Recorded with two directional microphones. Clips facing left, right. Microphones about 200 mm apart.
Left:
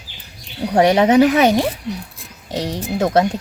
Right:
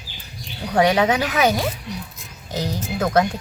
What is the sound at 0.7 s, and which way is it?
A woman's voice, 30° left (ahead or behind).